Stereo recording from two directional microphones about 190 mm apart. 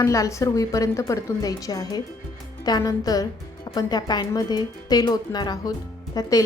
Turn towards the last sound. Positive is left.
turn(degrees=20)  # may be behind; listen again after turning